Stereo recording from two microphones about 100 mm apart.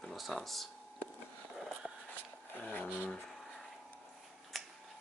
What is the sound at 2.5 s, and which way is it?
Speech, 15° left (ahead or behind).